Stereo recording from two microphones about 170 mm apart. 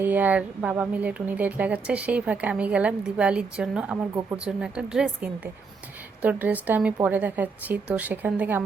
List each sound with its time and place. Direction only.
0.0 s speech: 10° right (ahead or behind)